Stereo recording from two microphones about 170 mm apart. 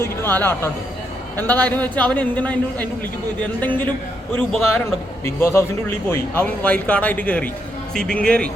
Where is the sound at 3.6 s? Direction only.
10° left (ahead or behind).